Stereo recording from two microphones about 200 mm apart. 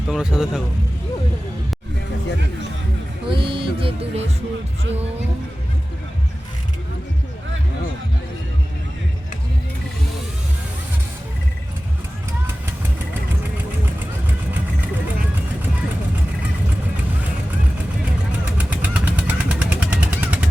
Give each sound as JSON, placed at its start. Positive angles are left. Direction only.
{"t": 0.1, "sound": "speech", "side_deg": -5}
{"t": 3.2, "sound": "music", "side_deg": -25}
{"t": 18.3, "sound": "vehicle", "side_deg": -5}